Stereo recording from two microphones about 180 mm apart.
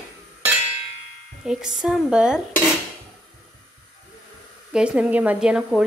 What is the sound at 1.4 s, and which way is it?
A woman's voice, 5° right (ahead or behind).